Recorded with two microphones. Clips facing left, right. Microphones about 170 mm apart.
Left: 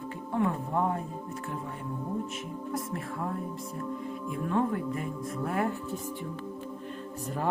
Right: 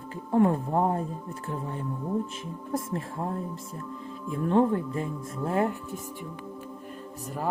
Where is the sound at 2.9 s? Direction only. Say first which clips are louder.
Right 2 dB; 30° right (ahead or behind).